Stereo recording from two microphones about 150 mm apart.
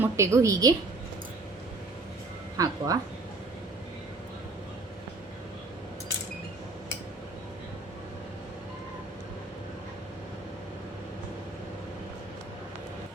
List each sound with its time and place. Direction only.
0.0 s a woman's voice: 20° right (ahead or behind)
2.6 s a woman's voice: 25° right (ahead or behind)